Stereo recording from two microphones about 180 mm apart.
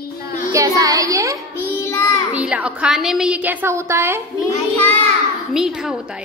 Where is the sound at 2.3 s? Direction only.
5° right (ahead or behind).